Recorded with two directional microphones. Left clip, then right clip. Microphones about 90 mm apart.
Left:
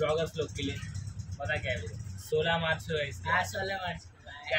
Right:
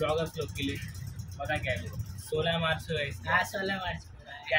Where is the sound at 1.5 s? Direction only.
20° left (ahead or behind).